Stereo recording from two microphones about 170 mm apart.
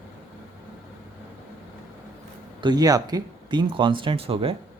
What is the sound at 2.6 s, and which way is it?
Speech, 25° right (ahead or behind).